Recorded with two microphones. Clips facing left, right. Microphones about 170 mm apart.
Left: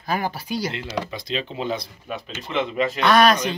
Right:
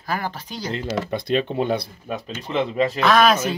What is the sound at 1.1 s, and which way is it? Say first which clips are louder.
Speech: right 7 dB; 55° right (ahead or behind).